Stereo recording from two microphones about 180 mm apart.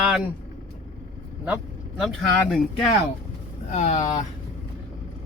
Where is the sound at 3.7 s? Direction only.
40° left (ahead or behind).